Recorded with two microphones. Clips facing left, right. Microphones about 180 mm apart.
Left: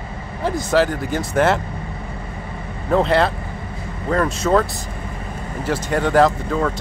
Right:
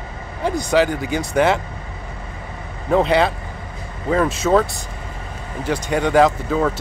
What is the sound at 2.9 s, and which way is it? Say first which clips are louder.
Speech: right 1 dB; centre (ahead or behind).